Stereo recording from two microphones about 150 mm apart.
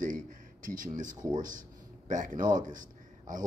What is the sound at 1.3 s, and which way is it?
A man's voice, 60° right (ahead or behind).